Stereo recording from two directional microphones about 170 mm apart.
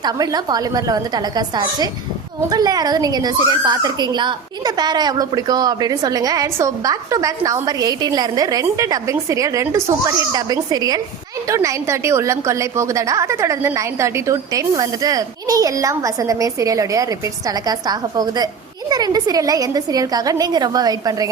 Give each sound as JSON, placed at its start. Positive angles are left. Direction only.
{"t": 0.0, "sound": "a child's voice", "side_deg": -20}